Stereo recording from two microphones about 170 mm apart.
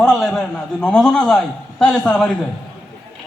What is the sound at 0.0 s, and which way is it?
A man's voice, 5° left (ahead or behind).